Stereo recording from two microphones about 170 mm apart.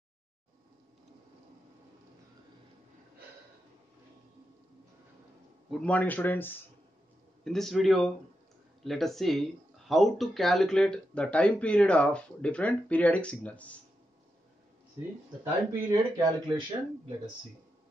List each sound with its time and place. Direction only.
5.7 s a man's voice: 5° left (ahead or behind)
15.4 s speech: 20° right (ahead or behind)